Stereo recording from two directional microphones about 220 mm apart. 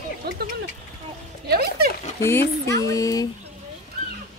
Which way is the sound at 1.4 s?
45° right (ahead or behind).